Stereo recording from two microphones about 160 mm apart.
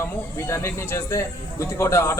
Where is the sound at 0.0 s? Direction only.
15° left (ahead or behind).